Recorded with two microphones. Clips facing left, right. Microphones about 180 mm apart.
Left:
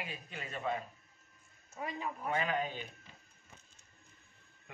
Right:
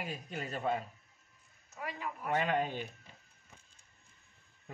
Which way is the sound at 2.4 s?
35° right (ahead or behind).